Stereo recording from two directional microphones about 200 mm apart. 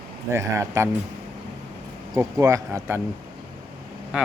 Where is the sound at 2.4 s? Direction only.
15° right (ahead or behind).